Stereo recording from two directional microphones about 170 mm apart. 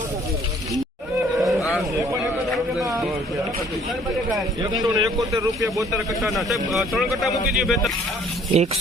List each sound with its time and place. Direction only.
1.4 s a sound: centre (ahead or behind)
4.6 s speech: 20° right (ahead or behind)
6.2 s speech: centre (ahead or behind)
8.5 s speech: 40° right (ahead or behind)